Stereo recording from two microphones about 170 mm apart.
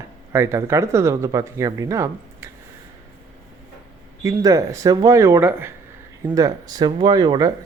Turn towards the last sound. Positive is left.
turn(degrees=-25)  # may be behind; listen again after turning